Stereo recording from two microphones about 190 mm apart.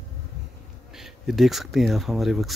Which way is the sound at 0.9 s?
Centre (ahead or behind).